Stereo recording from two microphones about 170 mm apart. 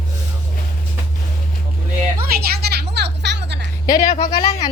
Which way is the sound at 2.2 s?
65° right (ahead or behind).